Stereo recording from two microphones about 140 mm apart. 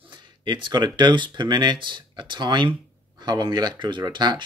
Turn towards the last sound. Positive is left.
turn(degrees=-35)  # may be behind; listen again after turning